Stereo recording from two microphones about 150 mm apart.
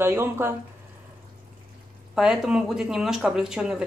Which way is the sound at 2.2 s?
5° right (ahead or behind).